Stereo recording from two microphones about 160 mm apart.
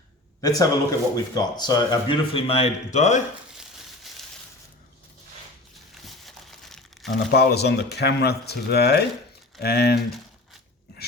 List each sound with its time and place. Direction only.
0.4 s speech: 20° left (ahead or behind); by 3.2 s 45° left (ahead or behind)
4.1 s crushing: centre (ahead or behind)
5.9 s crumpling: centre (ahead or behind)
7.3 s speech: 90° left